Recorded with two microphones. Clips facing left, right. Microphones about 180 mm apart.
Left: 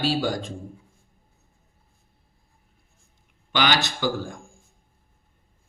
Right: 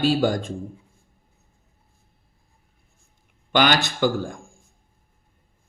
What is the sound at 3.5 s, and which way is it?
Speech, 50° right (ahead or behind).